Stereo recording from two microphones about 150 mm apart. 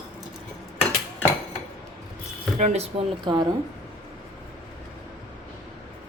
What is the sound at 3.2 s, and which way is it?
Speech, 30° right (ahead or behind).